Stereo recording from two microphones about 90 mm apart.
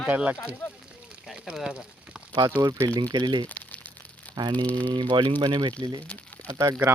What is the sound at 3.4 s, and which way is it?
Crumpling, 20° left (ahead or behind).